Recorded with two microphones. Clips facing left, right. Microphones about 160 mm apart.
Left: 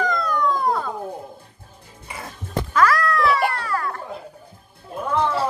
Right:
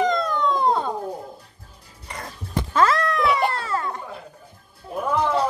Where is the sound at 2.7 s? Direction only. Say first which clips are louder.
Left 1 dB; 25° right (ahead or behind).